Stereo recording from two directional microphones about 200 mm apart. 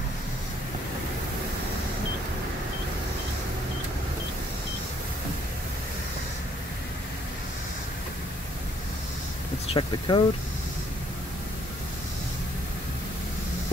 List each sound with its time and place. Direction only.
9.8 s speech: 25° left (ahead or behind)